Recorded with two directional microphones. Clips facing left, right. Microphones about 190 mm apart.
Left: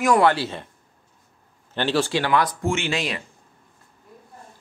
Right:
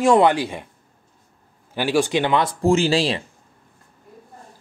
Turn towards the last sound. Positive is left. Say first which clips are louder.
# right 7 dB
turn(degrees=-30)  # may be behind; listen again after turning